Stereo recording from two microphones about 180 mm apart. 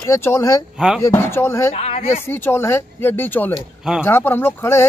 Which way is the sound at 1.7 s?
35° left (ahead or behind).